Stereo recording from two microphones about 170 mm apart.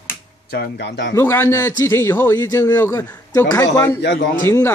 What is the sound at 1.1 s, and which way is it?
A man's voice, 15° left (ahead or behind).